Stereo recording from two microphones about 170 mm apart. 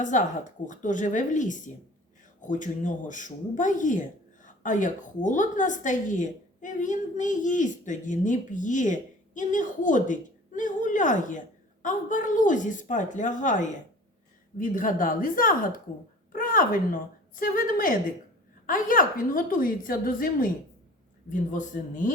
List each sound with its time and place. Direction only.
0.0 s a woman's voice: 50° left (ahead or behind)